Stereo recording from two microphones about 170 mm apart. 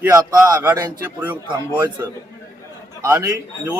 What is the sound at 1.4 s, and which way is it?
Speech, 30° right (ahead or behind).